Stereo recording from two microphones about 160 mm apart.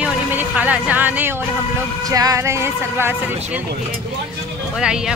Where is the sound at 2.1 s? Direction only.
20° right (ahead or behind).